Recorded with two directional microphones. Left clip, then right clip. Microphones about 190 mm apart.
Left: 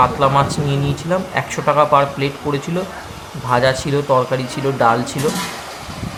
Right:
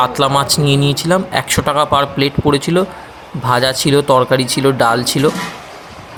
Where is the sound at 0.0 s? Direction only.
40° right (ahead or behind).